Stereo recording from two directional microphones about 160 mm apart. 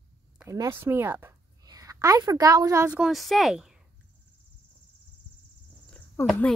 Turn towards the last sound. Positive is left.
turn(degrees=5)  # may be behind; listen again after turning